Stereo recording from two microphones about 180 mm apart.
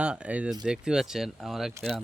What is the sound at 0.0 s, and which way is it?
Speech, 5° right (ahead or behind).